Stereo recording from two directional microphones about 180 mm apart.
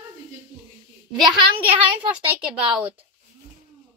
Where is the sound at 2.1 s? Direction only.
5° right (ahead or behind).